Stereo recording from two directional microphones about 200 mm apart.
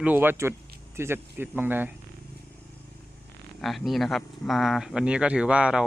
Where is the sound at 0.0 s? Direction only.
10° right (ahead or behind).